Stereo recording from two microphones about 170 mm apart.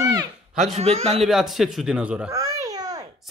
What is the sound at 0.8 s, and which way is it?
Speech, 40° right (ahead or behind).